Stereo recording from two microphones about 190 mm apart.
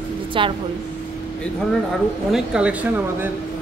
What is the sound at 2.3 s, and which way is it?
Speech, 5° right (ahead or behind).